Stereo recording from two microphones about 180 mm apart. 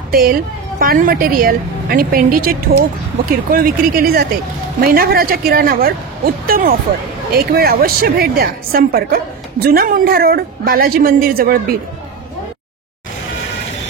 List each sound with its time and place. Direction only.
0.1 s a woman's voice: 55° right (ahead or behind)